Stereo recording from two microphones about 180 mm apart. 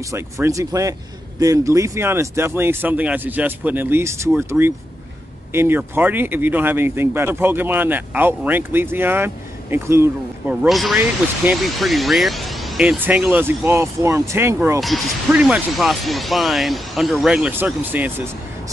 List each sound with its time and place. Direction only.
0.0 s speech: 15° right (ahead or behind)
14.8 s speech: centre (ahead or behind)